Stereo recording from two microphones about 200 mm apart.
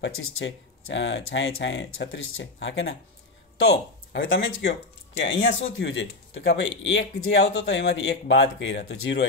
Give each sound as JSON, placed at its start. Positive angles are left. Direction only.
{"t": 0.0, "sound": "speech", "side_deg": 85}
{"t": 7.6, "sound": "speech", "side_deg": 60}